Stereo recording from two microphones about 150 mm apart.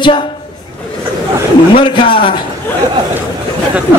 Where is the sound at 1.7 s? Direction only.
35° left (ahead or behind).